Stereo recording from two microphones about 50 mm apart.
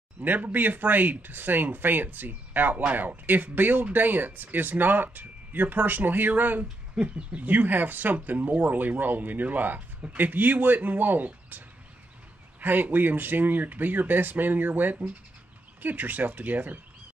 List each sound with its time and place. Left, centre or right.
0.2 s speech: right
7.0 s speech: right